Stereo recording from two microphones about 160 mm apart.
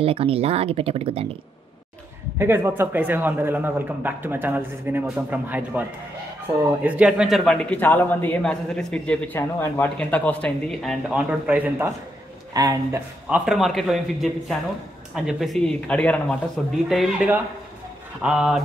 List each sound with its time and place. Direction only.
0.0 s speech: 35° right (ahead or behind)
2.3 s a man's voice: 15° right (ahead or behind)
7.7 s a man's voice: 10° left (ahead or behind); by 11.9 s 10° right (ahead or behind)
12.5 s speech: 20° right (ahead or behind)
13.3 s a man's voice: centre (ahead or behind)